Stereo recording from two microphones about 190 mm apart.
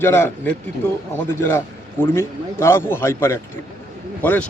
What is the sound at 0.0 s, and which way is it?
A man's voice, 15° left (ahead or behind).